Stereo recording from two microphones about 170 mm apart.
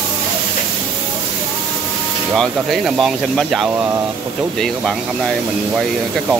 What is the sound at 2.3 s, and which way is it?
Speech, centre (ahead or behind).